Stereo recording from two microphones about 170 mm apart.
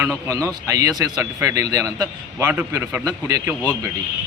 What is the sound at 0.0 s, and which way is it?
A man's voice, 20° right (ahead or behind).